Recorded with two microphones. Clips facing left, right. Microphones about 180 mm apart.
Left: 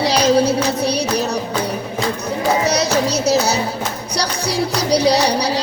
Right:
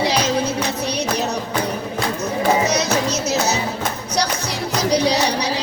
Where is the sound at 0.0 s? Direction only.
35° left (ahead or behind).